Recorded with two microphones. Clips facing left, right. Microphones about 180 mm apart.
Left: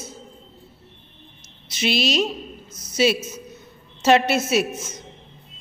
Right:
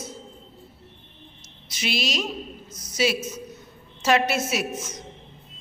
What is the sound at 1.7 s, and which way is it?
A woman's voice, 25° left (ahead or behind).